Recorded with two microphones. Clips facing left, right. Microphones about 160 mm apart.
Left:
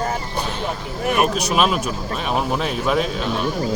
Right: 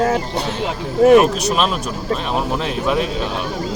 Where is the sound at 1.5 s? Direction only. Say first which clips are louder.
Even; 5° left (ahead or behind).